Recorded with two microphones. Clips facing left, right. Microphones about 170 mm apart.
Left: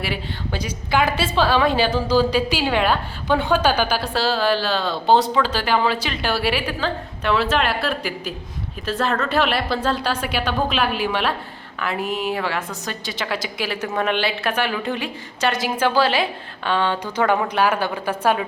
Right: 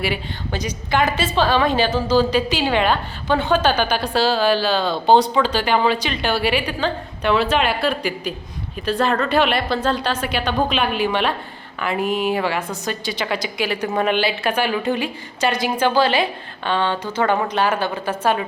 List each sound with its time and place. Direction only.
0.0 s a woman's voice: 5° left (ahead or behind)